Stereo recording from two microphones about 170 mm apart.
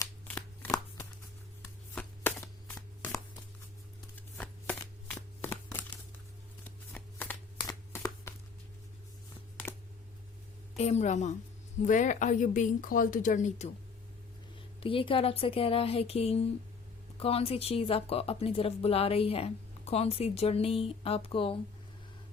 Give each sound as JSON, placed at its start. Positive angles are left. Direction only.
{"t": 2.0, "sound": "shuffling cards", "side_deg": 10}
{"t": 4.1, "sound": "a sound", "side_deg": 10}
{"t": 6.7, "sound": "shuffling cards", "side_deg": 10}
{"t": 7.7, "sound": "a sound", "side_deg": 20}
{"t": 10.8, "sound": "speech", "side_deg": 40}
{"t": 14.8, "sound": "speech", "side_deg": 30}